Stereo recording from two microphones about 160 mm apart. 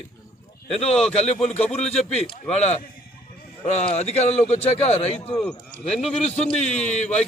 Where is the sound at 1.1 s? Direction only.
45° left (ahead or behind).